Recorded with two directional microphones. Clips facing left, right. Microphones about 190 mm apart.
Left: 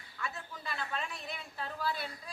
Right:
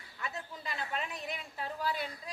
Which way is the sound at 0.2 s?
20° right (ahead or behind).